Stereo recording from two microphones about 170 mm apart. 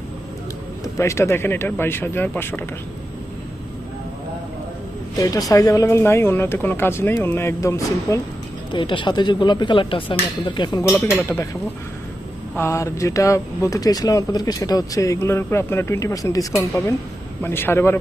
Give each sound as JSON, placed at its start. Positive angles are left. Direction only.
{"t": 0.8, "sound": "speech", "side_deg": 15}
{"t": 5.5, "sound": "speech", "side_deg": 20}
{"t": 8.7, "sound": "speech", "side_deg": 30}
{"t": 10.9, "sound": "speech", "side_deg": 0}
{"t": 11.1, "sound": "speech", "side_deg": 15}
{"t": 12.5, "sound": "speech", "side_deg": 15}